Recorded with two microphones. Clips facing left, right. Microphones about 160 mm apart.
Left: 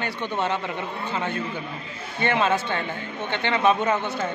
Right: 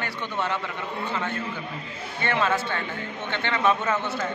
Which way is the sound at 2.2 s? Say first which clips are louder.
Left 2 dB; 20° left (ahead or behind).